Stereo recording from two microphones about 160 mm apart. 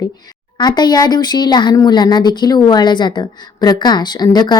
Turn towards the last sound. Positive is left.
turn(degrees=25)  # may be behind; listen again after turning